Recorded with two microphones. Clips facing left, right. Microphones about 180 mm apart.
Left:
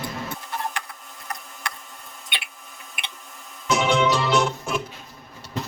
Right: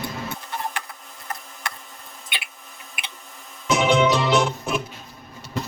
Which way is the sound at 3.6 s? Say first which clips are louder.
Right 2 dB; 20° right (ahead or behind).